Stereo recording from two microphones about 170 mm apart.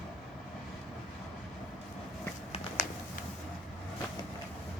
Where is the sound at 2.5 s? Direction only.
40° left (ahead or behind).